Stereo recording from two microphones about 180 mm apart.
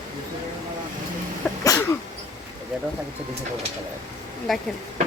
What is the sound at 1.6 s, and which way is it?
Sneeze, 15° left (ahead or behind).